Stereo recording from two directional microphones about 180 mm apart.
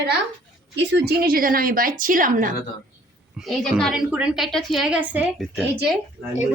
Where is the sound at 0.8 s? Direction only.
70° right (ahead or behind); by 2.5 s 50° right (ahead or behind).